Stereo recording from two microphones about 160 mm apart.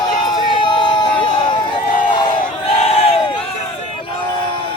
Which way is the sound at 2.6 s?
35° left (ahead or behind).